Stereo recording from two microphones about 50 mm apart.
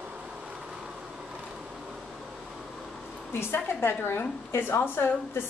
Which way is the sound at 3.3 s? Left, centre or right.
Left.